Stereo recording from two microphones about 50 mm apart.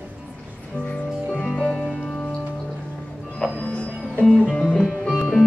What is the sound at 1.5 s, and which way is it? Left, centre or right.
Music, centre.